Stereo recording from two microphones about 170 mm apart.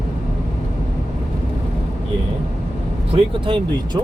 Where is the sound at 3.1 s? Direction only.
30° right (ahead or behind).